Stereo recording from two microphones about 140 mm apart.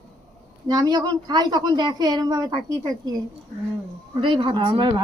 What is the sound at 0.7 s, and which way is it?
A woman's voice, 30° right (ahead or behind).